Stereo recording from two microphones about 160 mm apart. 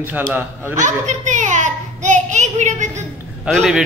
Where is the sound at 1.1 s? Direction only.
50° right (ahead or behind).